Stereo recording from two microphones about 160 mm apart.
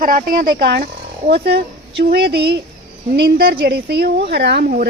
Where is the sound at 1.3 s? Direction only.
90° right.